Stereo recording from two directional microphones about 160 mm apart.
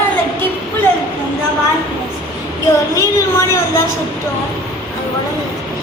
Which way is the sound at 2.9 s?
20° left (ahead or behind).